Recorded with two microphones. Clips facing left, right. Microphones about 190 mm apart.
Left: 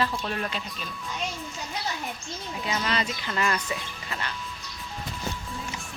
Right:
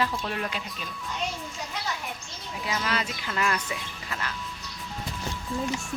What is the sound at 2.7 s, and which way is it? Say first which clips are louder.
Speech: left 1 dB; 5° right (ahead or behind).